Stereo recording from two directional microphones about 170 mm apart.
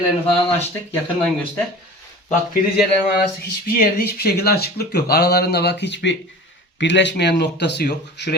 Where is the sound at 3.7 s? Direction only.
65° left (ahead or behind).